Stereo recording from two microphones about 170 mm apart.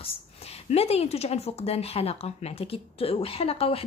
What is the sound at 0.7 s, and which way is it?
Speech, 35° left (ahead or behind).